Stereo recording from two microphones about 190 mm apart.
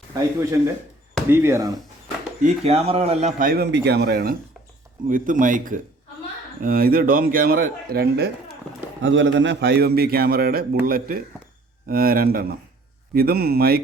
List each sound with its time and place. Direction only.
0.1 s speech: 15° right (ahead or behind)
2.4 s a man's voice: 30° right (ahead or behind); by 4.4 s 55° right (ahead or behind)
5.0 s a man's voice: 45° right (ahead or behind)
9.0 s a man's voice: 70° right (ahead or behind); by 13.8 s 55° right (ahead or behind)